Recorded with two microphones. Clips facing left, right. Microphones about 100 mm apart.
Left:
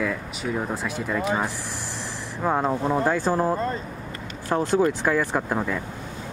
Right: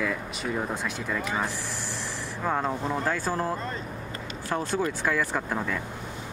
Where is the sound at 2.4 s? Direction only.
15° left (ahead or behind).